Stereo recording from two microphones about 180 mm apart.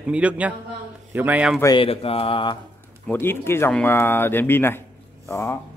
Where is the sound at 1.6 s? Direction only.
25° left (ahead or behind).